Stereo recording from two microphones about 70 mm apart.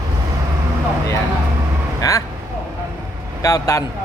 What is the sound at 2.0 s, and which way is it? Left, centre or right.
Speech, left.